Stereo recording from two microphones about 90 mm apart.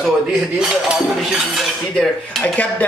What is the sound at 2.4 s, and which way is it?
Speech, 15° left (ahead or behind).